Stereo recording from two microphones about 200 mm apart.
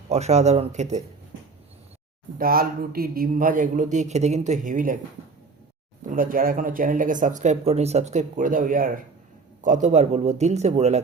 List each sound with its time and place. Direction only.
0.1 s speech: 35° right (ahead or behind)
2.4 s speech: 45° right (ahead or behind)
6.1 s speech: 45° right (ahead or behind)